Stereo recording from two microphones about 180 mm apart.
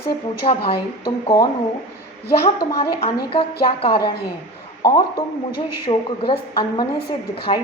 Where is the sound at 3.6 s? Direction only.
30° left (ahead or behind).